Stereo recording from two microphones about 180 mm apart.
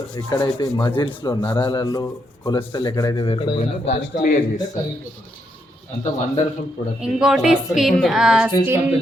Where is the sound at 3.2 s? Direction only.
30° left (ahead or behind).